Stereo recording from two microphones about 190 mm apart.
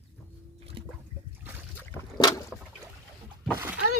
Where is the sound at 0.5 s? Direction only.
30° right (ahead or behind).